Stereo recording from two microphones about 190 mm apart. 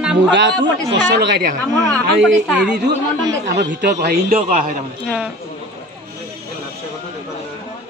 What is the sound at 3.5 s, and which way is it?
A man's voice, 65° right (ahead or behind).